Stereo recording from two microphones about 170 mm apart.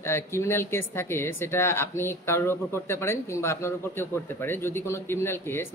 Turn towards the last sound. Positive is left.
turn(degrees=15)  # may be behind; listen again after turning